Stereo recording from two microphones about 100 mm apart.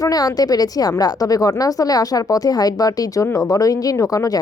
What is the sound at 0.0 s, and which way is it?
Speech, 40° left (ahead or behind).